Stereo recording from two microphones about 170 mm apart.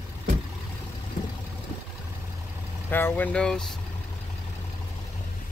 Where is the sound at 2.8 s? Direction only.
10° left (ahead or behind).